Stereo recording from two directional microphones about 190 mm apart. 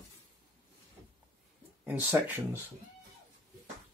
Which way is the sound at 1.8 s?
10° right (ahead or behind).